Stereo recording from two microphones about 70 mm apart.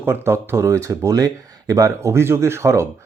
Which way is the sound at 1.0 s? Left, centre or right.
Right.